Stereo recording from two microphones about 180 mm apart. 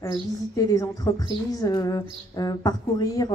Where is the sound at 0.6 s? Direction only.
20° left (ahead or behind).